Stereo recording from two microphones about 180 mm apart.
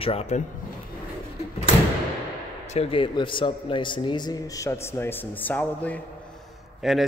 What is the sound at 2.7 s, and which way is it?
A man's voice, 30° left (ahead or behind).